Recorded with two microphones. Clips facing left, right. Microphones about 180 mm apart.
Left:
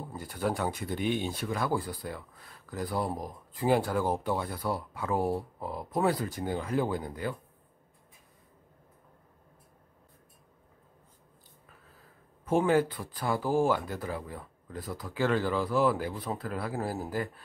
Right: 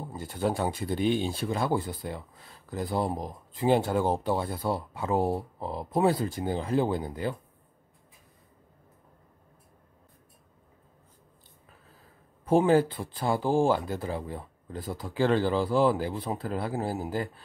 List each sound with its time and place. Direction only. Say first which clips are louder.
0.1 s speech: right 3 dB; 25° right (ahead or behind)
12.4 s speech: right 3 dB; 30° right (ahead or behind)